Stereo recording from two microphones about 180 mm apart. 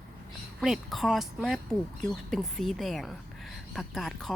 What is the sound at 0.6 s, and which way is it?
Speech, centre (ahead or behind).